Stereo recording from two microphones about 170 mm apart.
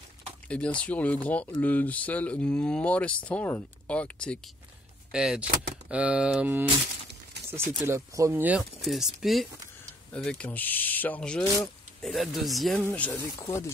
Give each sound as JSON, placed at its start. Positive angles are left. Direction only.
{"t": 0.5, "sound": "speech", "side_deg": 5}
{"t": 5.1, "sound": "speech", "side_deg": -5}
{"t": 7.8, "sound": "speech", "side_deg": -15}